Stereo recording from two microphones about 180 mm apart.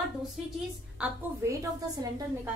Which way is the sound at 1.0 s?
20° right (ahead or behind).